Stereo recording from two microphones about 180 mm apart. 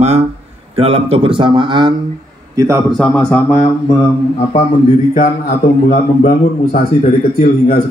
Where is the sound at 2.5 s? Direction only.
15° right (ahead or behind).